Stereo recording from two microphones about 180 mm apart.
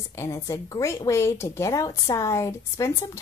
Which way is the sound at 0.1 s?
15° left (ahead or behind).